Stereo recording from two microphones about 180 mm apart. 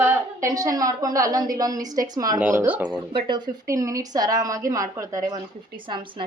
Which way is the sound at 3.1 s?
25° right (ahead or behind).